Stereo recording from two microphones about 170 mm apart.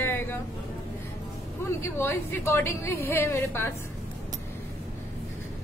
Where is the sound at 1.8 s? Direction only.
15° left (ahead or behind).